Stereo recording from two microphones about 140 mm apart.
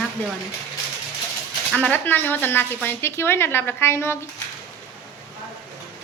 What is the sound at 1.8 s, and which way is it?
A woman's voice, 10° left (ahead or behind).